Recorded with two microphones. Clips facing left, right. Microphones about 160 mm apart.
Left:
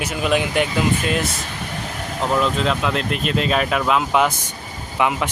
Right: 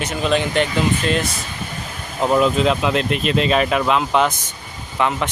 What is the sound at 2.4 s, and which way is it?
Speech, 5° right (ahead or behind).